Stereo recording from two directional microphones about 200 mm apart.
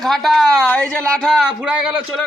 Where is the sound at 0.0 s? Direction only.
Centre (ahead or behind).